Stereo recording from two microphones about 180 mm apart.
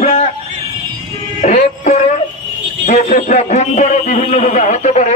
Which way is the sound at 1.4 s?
40° left (ahead or behind).